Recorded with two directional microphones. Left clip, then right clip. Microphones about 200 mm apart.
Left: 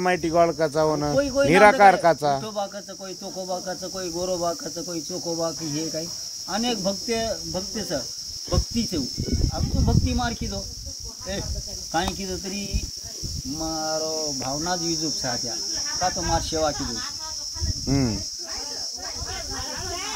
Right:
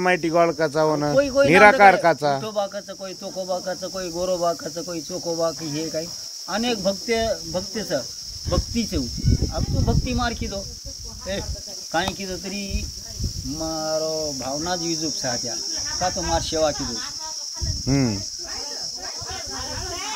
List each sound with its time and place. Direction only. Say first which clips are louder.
0.0 s cricket: right 1 dB; 15° right (ahead or behind)
11.9 s cricket: right 2 dB; 15° right (ahead or behind)
15.1 s cricket: right 1 dB; 35° right (ahead or behind)
16.2 s cricket: right 2 dB; 10° right (ahead or behind)
17.8 s speech: right 2 dB; 30° right (ahead or behind)